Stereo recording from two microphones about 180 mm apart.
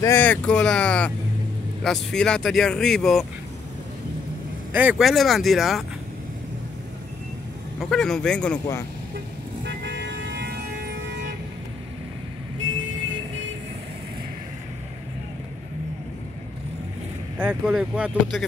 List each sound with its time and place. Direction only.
0.0 s speech: 10° left (ahead or behind)
4.7 s speech: 5° right (ahead or behind)
7.8 s speech: centre (ahead or behind)
9.7 s vehicle: 80° right
12.6 s vehicle: 90° right
17.4 s speech: 5° right (ahead or behind)